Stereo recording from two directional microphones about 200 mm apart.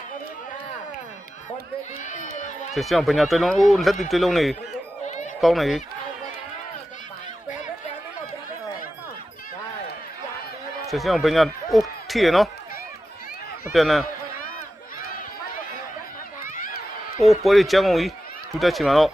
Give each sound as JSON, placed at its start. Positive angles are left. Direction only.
{"t": 2.7, "sound": "speech", "side_deg": 0}
{"t": 5.0, "sound": "run", "side_deg": 35}
{"t": 5.4, "sound": "speech", "side_deg": 0}
{"t": 10.8, "sound": "speech", "side_deg": 0}
{"t": 13.7, "sound": "speech", "side_deg": 0}
{"t": 17.2, "sound": "speech", "side_deg": 0}